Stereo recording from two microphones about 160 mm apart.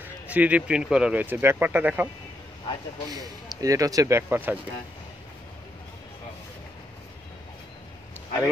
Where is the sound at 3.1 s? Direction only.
20° right (ahead or behind).